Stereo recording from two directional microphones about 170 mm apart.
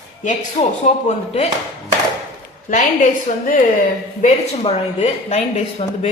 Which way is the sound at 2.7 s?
50° left (ahead or behind).